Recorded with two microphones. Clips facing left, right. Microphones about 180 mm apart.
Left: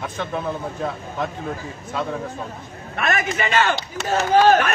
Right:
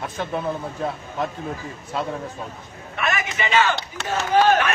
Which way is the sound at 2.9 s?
50° left (ahead or behind).